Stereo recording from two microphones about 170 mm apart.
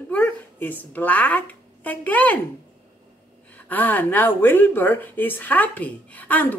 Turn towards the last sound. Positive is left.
turn(degrees=10)  # may be behind; listen again after turning